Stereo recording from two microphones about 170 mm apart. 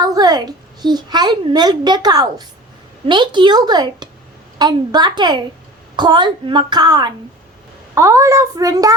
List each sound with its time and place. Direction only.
0.0 s a child's voice: 25° right (ahead or behind)